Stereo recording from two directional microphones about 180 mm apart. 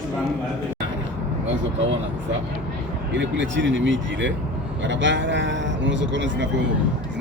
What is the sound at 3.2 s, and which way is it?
Speech, 90° right.